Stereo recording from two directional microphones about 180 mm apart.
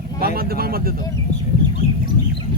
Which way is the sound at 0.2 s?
55° right (ahead or behind).